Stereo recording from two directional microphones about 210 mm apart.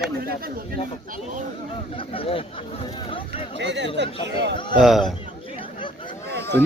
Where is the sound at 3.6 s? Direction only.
55° right (ahead or behind).